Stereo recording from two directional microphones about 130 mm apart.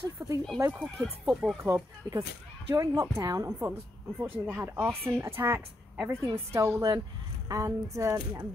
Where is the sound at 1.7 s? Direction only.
25° right (ahead or behind).